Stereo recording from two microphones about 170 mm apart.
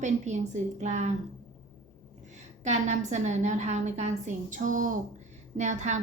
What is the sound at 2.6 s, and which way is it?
A woman's voice, 45° right (ahead or behind).